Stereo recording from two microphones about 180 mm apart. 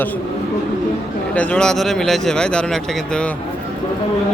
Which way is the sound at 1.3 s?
5° left (ahead or behind).